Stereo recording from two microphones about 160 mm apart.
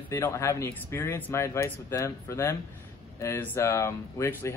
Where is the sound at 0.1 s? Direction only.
20° left (ahead or behind).